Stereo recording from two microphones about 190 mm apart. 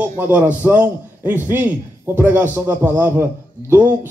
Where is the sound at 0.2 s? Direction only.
10° right (ahead or behind).